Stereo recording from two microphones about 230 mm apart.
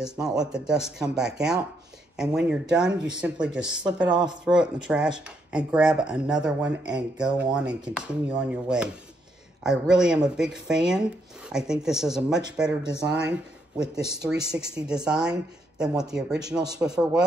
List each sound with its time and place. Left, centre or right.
0.0 s speech: centre
14.3 s speech: centre
15.0 s speech: centre